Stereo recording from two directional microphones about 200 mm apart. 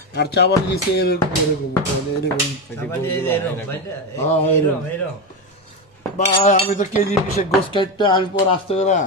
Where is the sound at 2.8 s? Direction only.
10° left (ahead or behind).